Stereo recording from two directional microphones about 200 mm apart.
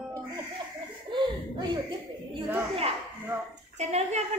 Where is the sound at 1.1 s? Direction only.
20° right (ahead or behind).